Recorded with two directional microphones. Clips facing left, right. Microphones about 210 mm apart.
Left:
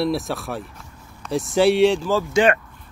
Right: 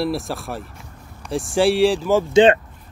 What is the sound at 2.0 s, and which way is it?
Speech, 20° right (ahead or behind).